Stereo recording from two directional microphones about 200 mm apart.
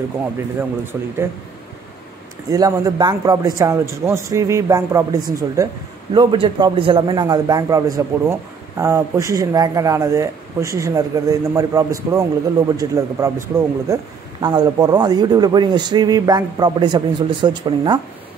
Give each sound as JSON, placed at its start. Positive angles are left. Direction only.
{"t": 0.9, "sound": "a man's voice", "side_deg": -10}
{"t": 2.5, "sound": "a man's voice", "side_deg": -20}